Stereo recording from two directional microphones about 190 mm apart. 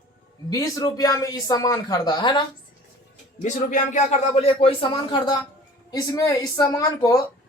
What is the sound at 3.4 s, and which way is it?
Speech, 40° left (ahead or behind).